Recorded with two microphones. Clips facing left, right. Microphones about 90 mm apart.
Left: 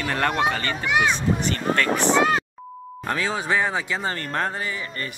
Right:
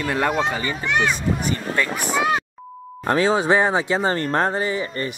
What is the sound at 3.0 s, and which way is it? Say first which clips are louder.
Speech: right 7 dB; 30° right (ahead or behind).